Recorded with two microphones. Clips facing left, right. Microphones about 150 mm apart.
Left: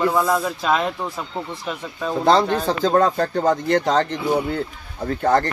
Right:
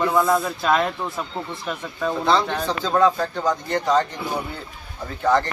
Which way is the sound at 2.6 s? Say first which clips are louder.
Left 2 dB; 45° left (ahead or behind).